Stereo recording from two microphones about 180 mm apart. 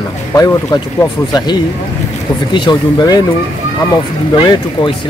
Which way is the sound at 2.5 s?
25° left (ahead or behind).